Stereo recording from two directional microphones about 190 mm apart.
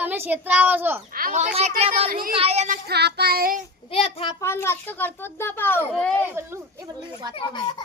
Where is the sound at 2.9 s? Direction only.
60° right (ahead or behind).